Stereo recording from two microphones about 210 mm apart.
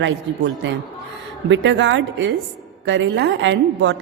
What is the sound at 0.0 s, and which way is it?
A woman's voice, 60° right (ahead or behind).